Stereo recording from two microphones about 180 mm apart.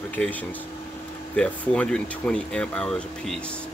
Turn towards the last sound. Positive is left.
turn(degrees=5)  # may be behind; listen again after turning